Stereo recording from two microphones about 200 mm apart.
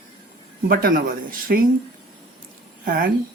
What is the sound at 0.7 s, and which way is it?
Speech, 45° right (ahead or behind).